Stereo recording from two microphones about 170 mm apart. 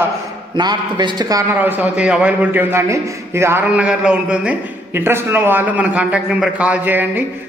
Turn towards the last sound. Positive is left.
turn(degrees=-10)  # may be behind; listen again after turning